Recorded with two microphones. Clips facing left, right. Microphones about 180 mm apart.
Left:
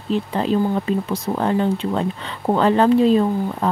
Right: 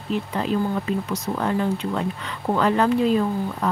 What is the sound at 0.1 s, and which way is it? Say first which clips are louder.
Speech: left 4 dB; 30° left (ahead or behind).